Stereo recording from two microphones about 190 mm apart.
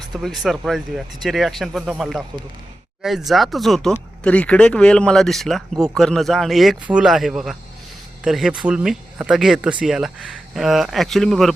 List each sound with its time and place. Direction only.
0.1 s speech: centre (ahead or behind)